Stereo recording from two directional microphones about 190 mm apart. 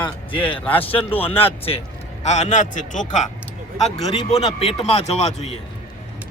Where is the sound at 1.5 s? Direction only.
30° left (ahead or behind).